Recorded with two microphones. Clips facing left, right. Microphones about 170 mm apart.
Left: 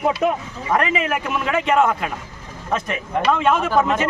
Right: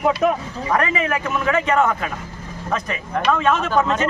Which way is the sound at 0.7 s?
10° left (ahead or behind).